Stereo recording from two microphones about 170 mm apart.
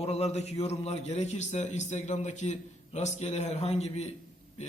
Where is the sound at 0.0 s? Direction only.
40° left (ahead or behind).